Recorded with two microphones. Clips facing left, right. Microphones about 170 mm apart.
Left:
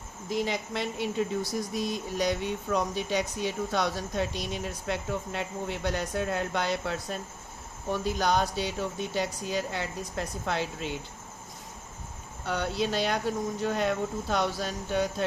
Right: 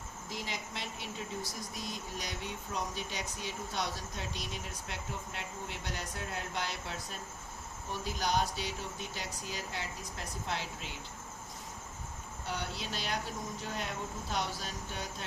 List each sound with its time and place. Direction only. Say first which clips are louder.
0.3 s speech: left 12 dB; 65° left (ahead or behind)
12.5 s speech: left 10 dB; 70° left (ahead or behind)